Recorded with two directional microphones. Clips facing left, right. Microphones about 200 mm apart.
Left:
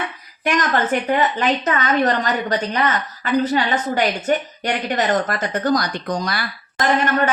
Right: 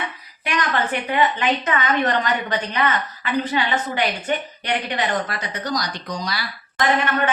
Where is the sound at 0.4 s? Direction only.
45° left (ahead or behind).